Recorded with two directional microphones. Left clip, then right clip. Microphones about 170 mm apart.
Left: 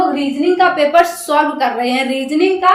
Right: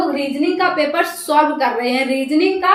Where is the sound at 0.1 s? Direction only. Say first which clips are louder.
Left 3 dB; 25° left (ahead or behind).